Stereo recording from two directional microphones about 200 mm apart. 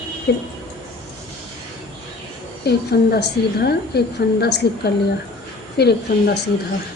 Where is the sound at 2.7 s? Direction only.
55° left (ahead or behind).